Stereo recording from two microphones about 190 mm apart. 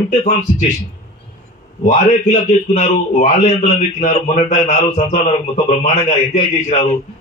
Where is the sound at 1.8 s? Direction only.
40° left (ahead or behind).